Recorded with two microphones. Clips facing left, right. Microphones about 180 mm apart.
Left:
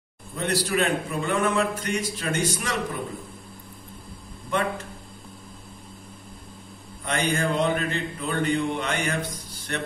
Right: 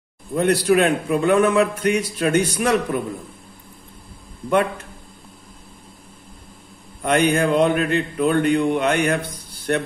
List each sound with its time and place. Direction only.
0.3 s mantra: 60° right (ahead or behind)
7.1 s mantra: 60° right (ahead or behind)